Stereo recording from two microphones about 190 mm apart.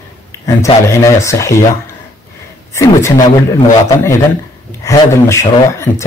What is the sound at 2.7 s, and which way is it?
Speech, 15° left (ahead or behind).